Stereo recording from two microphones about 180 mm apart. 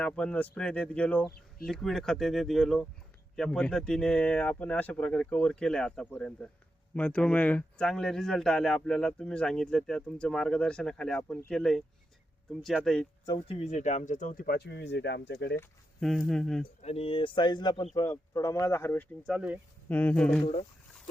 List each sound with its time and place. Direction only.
0.0 s speech: 5° left (ahead or behind)
13.2 s speech: 30° left (ahead or behind); by 15.6 s 70° left (ahead or behind)
16.0 s speech: centre (ahead or behind)
16.8 s speech: 35° left (ahead or behind); by 19.5 s 5° right (ahead or behind)
19.9 s speech: 10° left (ahead or behind)